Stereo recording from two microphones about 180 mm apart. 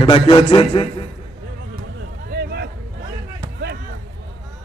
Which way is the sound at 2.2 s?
60° right (ahead or behind).